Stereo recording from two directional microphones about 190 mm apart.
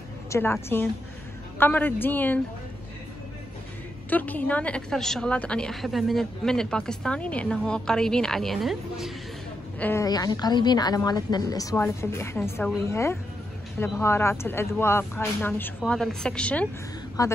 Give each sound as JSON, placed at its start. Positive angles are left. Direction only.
{"t": 0.3, "sound": "speech", "side_deg": 15}
{"t": 4.1, "sound": "a woman's voice", "side_deg": 10}
{"t": 9.8, "sound": "a woman's voice", "side_deg": 10}
{"t": 17.2, "sound": "speech", "side_deg": 20}